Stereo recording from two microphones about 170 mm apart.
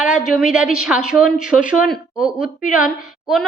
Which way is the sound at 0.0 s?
5° right (ahead or behind).